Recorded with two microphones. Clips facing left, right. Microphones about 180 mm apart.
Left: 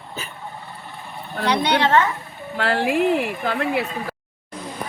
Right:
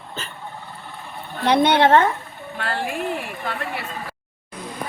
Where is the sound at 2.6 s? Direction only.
80° left.